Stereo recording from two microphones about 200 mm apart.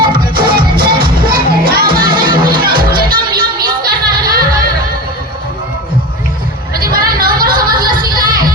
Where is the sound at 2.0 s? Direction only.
25° right (ahead or behind).